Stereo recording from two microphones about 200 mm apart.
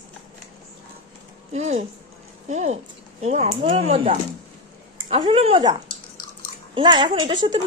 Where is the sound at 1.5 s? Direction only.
35° right (ahead or behind).